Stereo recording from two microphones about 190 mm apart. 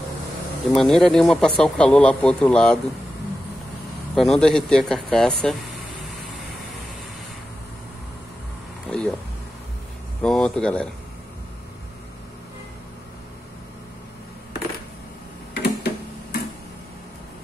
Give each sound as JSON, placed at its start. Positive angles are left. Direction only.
{"t": 0.7, "sound": "speech", "side_deg": 0}
{"t": 4.1, "sound": "speech", "side_deg": 0}
{"t": 8.8, "sound": "a sound", "side_deg": 5}
{"t": 10.2, "sound": "speech", "side_deg": 5}
{"t": 15.5, "sound": "tick-tock", "side_deg": 55}